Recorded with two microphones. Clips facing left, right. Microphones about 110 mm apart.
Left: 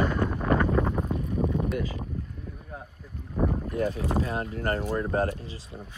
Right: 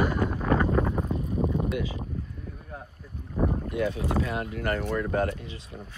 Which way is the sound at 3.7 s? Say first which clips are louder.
Even; 40° left (ahead or behind).